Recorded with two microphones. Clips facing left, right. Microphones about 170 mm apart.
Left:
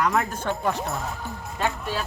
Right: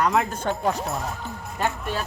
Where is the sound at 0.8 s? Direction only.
Centre (ahead or behind).